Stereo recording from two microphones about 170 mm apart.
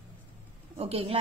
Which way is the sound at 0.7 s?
35° right (ahead or behind).